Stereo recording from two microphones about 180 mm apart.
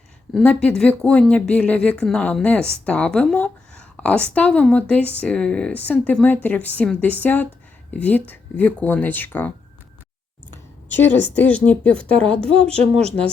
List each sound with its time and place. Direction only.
0.3 s speech: 5° left (ahead or behind)
11.5 s speech: 5° left (ahead or behind)
12.7 s a woman's voice: 35° right (ahead or behind)